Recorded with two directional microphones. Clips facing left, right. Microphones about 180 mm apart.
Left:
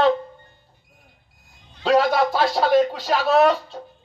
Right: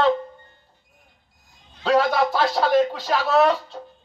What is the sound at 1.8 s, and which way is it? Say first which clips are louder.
Speech: left 1 dB; 15° left (ahead or behind).